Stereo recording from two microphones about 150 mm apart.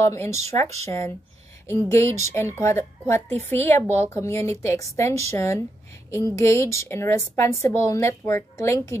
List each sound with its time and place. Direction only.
0.0 s a woman's voice: 20° left (ahead or behind)